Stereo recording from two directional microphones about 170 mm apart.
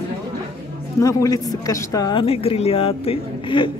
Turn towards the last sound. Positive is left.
turn(degrees=30)  # may be behind; listen again after turning